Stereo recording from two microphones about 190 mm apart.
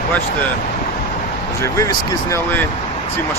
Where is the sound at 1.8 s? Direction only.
15° left (ahead or behind).